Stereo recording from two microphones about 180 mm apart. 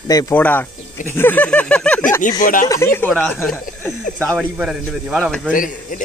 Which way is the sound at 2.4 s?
45° left (ahead or behind).